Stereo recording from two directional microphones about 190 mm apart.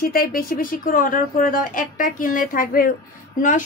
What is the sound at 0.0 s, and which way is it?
A woman's voice, 50° left (ahead or behind).